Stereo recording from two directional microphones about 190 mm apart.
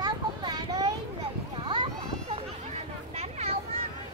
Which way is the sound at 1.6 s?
25° right (ahead or behind).